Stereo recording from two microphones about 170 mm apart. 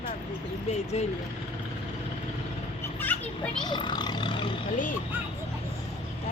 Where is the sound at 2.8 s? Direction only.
10° left (ahead or behind).